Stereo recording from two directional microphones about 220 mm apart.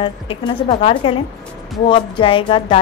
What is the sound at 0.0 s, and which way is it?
A woman's voice, 25° left (ahead or behind).